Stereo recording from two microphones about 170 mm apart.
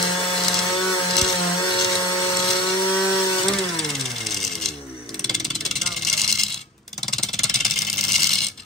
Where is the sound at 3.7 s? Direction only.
Centre (ahead or behind).